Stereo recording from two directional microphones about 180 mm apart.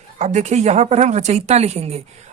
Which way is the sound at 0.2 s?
40° right (ahead or behind).